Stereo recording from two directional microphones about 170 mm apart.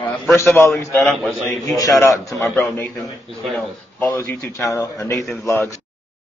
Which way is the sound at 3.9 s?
15° left (ahead or behind).